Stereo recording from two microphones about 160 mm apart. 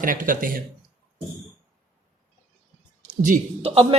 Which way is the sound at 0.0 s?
60° right (ahead or behind).